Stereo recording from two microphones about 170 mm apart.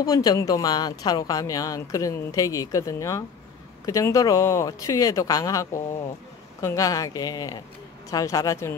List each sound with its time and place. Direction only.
0.0 s speech: 20° left (ahead or behind)